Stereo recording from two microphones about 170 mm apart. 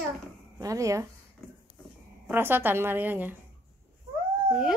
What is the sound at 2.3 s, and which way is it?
A woman's voice, 10° right (ahead or behind).